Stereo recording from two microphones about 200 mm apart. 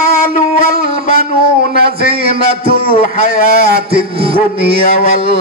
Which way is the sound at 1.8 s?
50° right (ahead or behind).